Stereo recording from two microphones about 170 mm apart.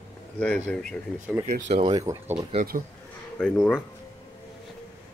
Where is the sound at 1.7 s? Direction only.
30° right (ahead or behind).